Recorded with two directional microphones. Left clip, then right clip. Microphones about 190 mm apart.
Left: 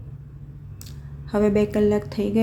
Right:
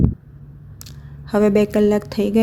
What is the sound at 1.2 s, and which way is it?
A woman's voice, 40° right (ahead or behind).